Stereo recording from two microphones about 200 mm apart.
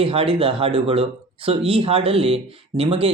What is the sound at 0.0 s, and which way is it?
Speech, 30° right (ahead or behind).